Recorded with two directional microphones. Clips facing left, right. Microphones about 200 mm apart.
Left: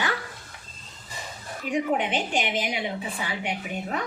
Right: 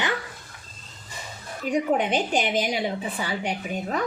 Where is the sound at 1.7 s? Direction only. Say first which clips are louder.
Right 2 dB; 40° right (ahead or behind).